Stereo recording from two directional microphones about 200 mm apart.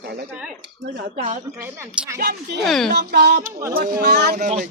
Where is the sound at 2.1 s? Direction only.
50° right (ahead or behind).